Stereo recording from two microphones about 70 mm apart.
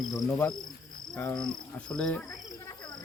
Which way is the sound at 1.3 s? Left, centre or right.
Centre.